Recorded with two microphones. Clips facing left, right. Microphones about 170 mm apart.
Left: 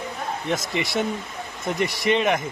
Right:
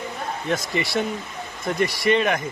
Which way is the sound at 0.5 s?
20° left (ahead or behind).